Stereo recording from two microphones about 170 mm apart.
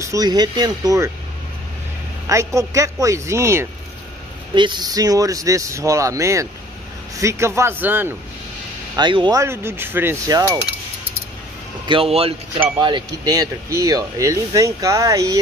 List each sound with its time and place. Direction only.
0.0 s speech: 20° right (ahead or behind)
2.2 s speech: 20° right (ahead or behind)
8.9 s speech: 25° right (ahead or behind)
11.9 s speech: 35° right (ahead or behind)